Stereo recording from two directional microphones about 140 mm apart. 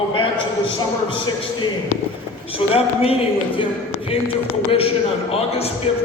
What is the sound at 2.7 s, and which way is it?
Speech, 45° left (ahead or behind).